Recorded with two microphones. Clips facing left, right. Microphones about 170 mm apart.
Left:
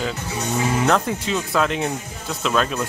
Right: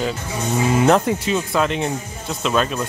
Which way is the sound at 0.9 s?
10° right (ahead or behind).